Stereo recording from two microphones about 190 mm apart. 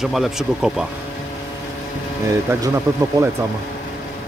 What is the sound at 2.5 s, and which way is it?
Speech, 15° right (ahead or behind).